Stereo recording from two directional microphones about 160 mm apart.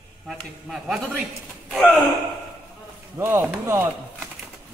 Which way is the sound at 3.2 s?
15° right (ahead or behind).